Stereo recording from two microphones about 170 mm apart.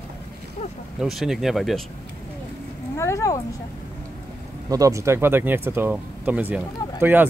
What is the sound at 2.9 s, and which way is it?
Speech, 15° left (ahead or behind).